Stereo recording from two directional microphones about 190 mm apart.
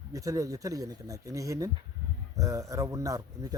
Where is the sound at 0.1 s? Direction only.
15° right (ahead or behind).